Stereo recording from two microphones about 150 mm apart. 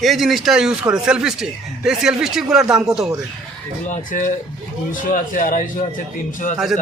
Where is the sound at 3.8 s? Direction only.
60° left (ahead or behind).